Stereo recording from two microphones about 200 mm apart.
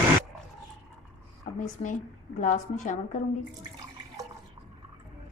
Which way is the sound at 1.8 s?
35° left (ahead or behind).